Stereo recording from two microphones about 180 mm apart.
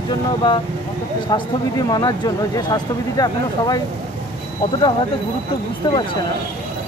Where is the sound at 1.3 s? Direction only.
25° left (ahead or behind).